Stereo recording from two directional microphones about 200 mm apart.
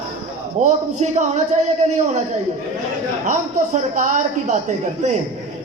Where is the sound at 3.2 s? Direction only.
40° right (ahead or behind).